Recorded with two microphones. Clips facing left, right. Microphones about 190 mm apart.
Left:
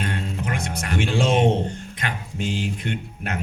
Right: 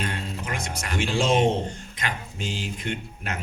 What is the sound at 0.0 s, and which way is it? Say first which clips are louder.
Music: left 4 dB; 55° left (ahead or behind).